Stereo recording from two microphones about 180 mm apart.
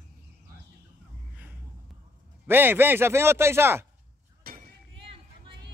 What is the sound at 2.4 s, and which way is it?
A man's voice, 10° right (ahead or behind).